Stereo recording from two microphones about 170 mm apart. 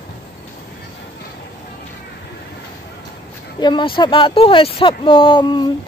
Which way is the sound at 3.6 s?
25° left (ahead or behind).